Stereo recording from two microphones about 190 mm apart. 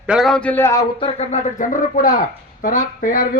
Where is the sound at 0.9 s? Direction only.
30° left (ahead or behind).